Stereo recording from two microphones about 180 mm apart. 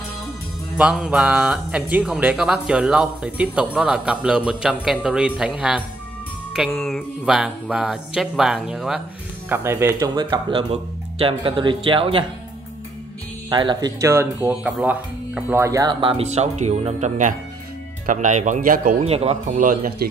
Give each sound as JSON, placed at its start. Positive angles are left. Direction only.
{"t": 0.7, "sound": "speech", "side_deg": -5}
{"t": 13.5, "sound": "speech", "side_deg": -25}
{"t": 14.0, "sound": "speech", "side_deg": -15}
{"t": 18.9, "sound": "speech", "side_deg": -35}